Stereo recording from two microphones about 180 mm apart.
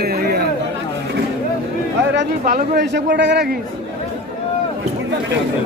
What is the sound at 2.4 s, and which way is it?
Speech, 50° right (ahead or behind).